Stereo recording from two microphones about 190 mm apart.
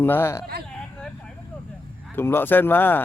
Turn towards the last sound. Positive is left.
turn(degrees=10)  # may be behind; listen again after turning